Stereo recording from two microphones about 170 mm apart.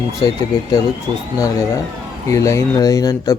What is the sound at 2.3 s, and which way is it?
Speech, 20° left (ahead or behind).